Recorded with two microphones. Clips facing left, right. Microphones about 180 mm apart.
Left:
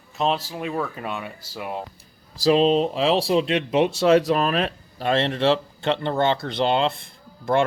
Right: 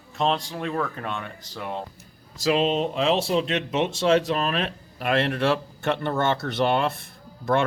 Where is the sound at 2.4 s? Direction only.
35° left (ahead or behind).